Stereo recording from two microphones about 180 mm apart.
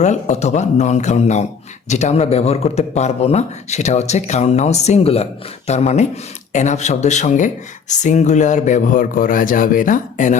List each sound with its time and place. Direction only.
0.0 s speech: 40° left (ahead or behind)